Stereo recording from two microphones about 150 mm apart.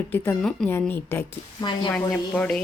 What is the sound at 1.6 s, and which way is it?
Speech, 30° left (ahead or behind).